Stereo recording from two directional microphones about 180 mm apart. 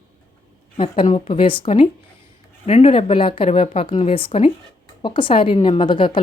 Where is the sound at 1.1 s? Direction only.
30° left (ahead or behind).